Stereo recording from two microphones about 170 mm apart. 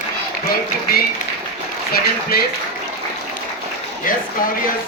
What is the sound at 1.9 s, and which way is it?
Speech, 65° left (ahead or behind).